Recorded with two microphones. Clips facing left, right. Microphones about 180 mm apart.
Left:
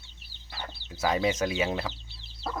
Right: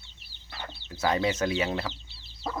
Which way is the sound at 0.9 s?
10° left (ahead or behind).